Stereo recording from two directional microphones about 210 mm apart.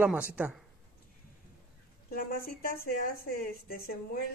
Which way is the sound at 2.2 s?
45° left (ahead or behind).